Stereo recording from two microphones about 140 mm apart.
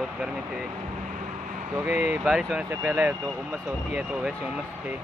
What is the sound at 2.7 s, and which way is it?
Speech, 15° right (ahead or behind).